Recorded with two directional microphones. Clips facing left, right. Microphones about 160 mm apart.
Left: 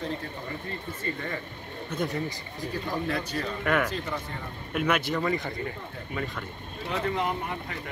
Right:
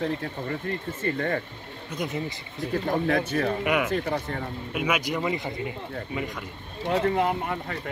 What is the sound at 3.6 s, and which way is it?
Speech, 10° right (ahead or behind).